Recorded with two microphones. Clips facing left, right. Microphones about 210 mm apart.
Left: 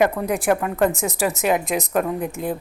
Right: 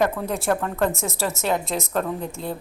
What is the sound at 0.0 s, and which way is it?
A woman's voice, 15° left (ahead or behind).